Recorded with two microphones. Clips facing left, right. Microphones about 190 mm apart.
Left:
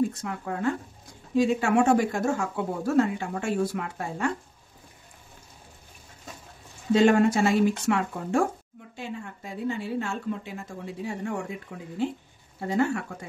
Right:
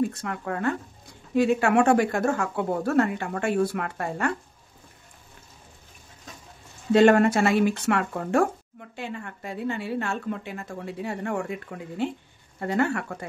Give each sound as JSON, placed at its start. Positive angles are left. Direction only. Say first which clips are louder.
{"t": 0.1, "sound": "speech", "louder": "right 2 dB", "side_deg": -65}
{"t": 6.9, "sound": "a woman's voice", "louder": "right 2 dB", "side_deg": -65}